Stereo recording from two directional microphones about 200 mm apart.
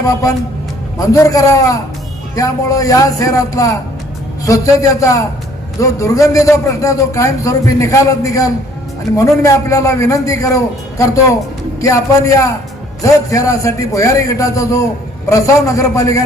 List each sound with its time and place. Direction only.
0.1 s a man's voice: 15° left (ahead or behind)